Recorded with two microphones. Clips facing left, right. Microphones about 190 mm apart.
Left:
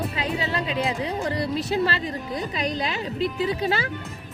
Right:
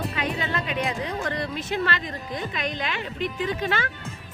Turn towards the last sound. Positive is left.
turn(degrees=35)  # may be behind; listen again after turning